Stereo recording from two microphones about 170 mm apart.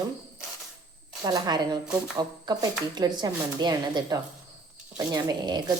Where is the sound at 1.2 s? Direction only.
25° right (ahead or behind).